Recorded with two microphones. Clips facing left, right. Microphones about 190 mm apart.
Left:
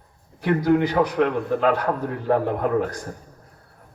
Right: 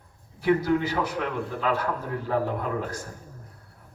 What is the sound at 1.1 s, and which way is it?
A man's voice, 60° left (ahead or behind).